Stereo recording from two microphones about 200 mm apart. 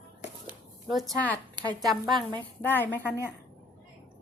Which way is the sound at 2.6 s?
10° left (ahead or behind).